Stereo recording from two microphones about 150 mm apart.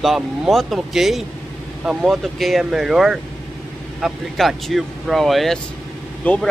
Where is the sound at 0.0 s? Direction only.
Centre (ahead or behind).